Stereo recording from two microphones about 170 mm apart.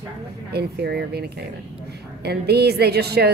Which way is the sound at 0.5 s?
70° right (ahead or behind).